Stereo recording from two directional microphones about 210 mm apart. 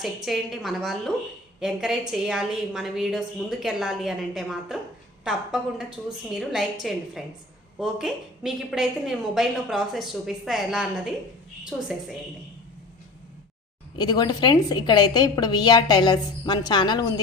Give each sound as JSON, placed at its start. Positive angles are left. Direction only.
{"t": 0.3, "sound": "a woman's voice", "side_deg": 0}
{"t": 14.0, "sound": "a woman's voice", "side_deg": 20}